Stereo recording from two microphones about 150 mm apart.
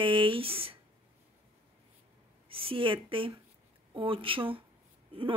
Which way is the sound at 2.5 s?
35° right (ahead or behind).